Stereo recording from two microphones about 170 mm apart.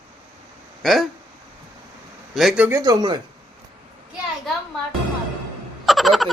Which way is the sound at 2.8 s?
25° right (ahead or behind).